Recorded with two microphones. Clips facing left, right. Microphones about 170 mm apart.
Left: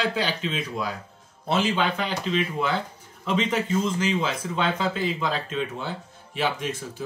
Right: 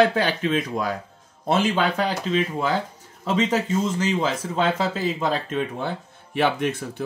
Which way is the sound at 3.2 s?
40° right (ahead or behind).